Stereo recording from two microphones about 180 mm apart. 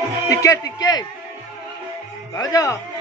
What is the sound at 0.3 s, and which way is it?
Speech, 20° left (ahead or behind).